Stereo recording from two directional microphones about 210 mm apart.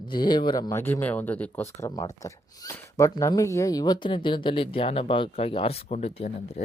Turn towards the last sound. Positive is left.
turn(degrees=30)  # may be behind; listen again after turning